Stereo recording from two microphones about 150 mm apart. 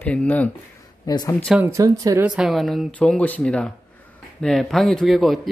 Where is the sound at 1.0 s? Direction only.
25° left (ahead or behind).